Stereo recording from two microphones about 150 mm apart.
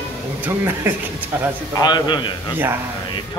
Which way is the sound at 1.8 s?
30° left (ahead or behind).